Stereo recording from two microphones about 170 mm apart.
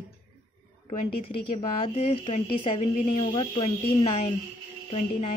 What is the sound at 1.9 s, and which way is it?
Speech, 35° left (ahead or behind).